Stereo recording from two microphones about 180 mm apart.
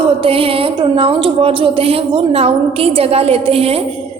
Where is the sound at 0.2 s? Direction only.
30° right (ahead or behind).